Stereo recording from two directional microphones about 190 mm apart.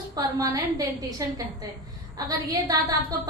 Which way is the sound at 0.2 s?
20° right (ahead or behind).